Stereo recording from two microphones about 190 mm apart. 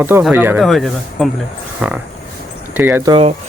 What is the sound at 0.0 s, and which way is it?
Speech, 10° right (ahead or behind).